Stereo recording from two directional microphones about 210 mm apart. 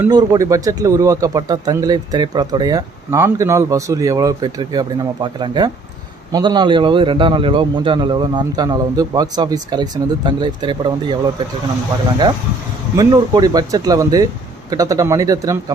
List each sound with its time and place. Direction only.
0.0 s a man's voice: 15° right (ahead or behind)
13.0 s a man's voice: 15° right (ahead or behind)